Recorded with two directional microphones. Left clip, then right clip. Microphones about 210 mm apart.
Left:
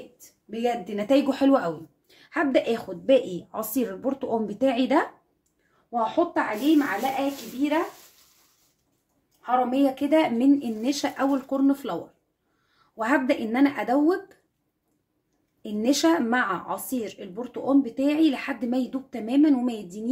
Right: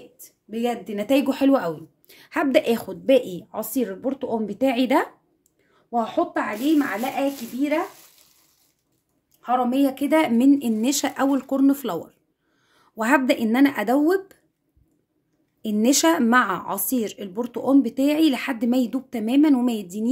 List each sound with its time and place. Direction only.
0.5 s a woman's voice: 25° right (ahead or behind)
2.0 s a woman's voice: 35° right (ahead or behind)
5.9 s speech: 35° right (ahead or behind)
9.4 s speech: 40° right (ahead or behind)
15.6 s speech: 40° right (ahead or behind)